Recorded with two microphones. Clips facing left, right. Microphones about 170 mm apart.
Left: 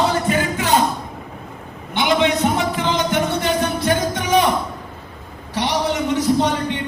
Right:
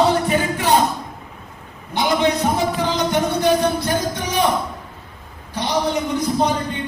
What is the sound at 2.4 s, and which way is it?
Music, 75° left (ahead or behind).